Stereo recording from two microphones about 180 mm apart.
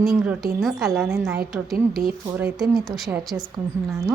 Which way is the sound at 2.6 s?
Centre (ahead or behind).